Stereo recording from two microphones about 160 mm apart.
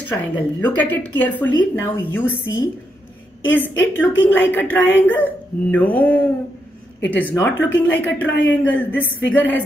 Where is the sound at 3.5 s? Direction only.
10° left (ahead or behind).